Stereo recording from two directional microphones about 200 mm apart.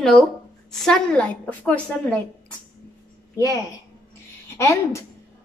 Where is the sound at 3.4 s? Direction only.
15° left (ahead or behind).